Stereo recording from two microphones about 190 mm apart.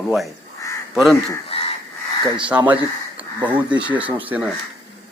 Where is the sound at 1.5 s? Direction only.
30° left (ahead or behind).